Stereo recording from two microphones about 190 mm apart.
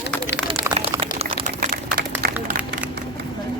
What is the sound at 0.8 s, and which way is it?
Liquid, 30° right (ahead or behind).